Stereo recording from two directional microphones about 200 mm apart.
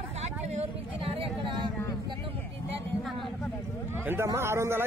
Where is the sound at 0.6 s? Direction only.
25° right (ahead or behind).